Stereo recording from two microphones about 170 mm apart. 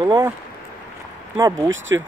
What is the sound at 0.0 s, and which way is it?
Speech, 25° right (ahead or behind).